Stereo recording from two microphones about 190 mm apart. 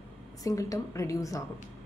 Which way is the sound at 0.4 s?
20° left (ahead or behind).